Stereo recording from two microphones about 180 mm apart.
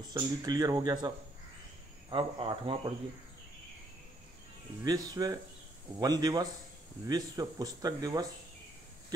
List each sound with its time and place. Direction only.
0.0 s speech: 20° right (ahead or behind)
4.8 s speech: 20° right (ahead or behind)